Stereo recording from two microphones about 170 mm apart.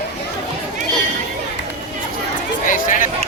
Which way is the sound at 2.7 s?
50° left (ahead or behind).